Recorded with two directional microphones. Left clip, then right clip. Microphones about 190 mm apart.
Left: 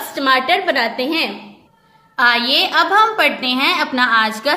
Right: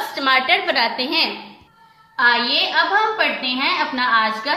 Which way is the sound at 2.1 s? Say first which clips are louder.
Left 2 dB; 60° left (ahead or behind).